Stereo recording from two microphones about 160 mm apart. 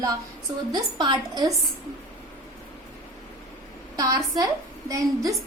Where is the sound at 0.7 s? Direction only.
25° right (ahead or behind).